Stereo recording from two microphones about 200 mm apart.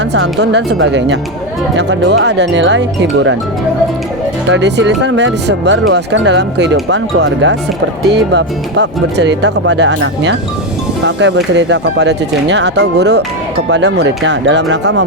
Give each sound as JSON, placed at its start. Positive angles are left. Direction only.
{"t": 0.1, "sound": "speech", "side_deg": -60}
{"t": 4.4, "sound": "speech", "side_deg": -65}